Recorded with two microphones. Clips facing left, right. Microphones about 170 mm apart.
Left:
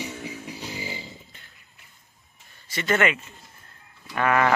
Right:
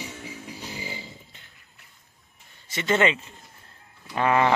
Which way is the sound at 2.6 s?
25° right (ahead or behind).